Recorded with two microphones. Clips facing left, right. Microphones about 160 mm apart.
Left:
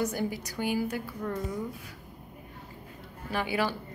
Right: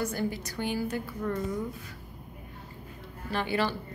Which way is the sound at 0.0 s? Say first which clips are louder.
Left 1 dB; 15° left (ahead or behind).